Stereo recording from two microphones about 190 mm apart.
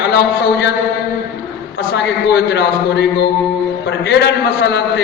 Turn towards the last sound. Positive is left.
turn(degrees=65)  # may be behind; listen again after turning